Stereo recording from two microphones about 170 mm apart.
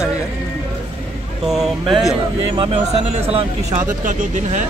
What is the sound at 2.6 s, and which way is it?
Speech, 35° right (ahead or behind).